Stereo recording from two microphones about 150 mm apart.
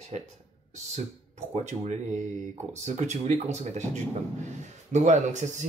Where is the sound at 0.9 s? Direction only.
50° right (ahead or behind).